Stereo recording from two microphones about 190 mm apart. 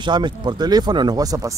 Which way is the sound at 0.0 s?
25° right (ahead or behind).